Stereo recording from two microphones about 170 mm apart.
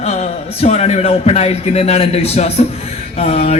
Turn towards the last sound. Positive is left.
turn(degrees=40)  # may be behind; listen again after turning